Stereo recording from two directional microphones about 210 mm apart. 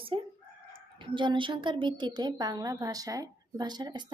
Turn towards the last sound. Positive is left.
turn(degrees=-20)  # may be behind; listen again after turning